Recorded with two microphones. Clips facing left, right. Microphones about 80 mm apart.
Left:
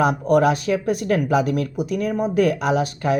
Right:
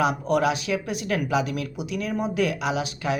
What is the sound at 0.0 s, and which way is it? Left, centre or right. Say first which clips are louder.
A woman's voice: left 5 dB; left.